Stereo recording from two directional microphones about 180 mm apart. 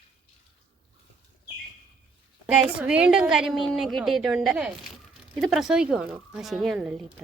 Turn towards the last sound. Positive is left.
turn(degrees=-5)  # may be behind; listen again after turning